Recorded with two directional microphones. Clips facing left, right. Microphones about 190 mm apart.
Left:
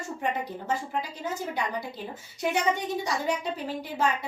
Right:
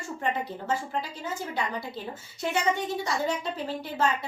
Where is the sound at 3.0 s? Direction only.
15° left (ahead or behind).